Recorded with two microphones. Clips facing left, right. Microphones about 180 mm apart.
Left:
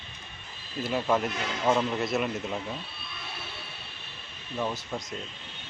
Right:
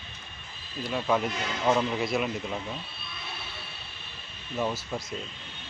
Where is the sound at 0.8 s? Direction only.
Centre (ahead or behind).